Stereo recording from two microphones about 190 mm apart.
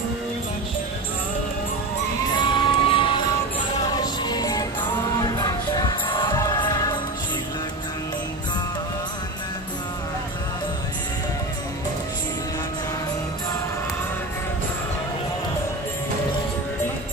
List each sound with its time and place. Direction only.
2.3 s crowd: 25° left (ahead or behind)
3.9 s music: 20° left (ahead or behind)